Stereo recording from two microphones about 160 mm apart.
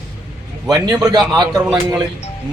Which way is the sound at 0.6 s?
25° right (ahead or behind).